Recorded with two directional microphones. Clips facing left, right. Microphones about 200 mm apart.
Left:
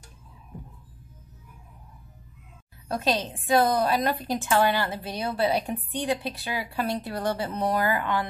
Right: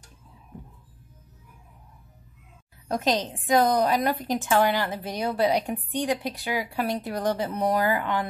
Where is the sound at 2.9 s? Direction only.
15° right (ahead or behind).